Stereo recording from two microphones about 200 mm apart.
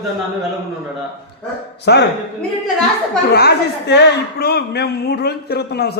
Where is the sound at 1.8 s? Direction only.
60° left (ahead or behind).